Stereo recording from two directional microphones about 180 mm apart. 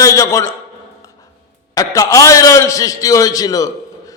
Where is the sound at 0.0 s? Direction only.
20° left (ahead or behind).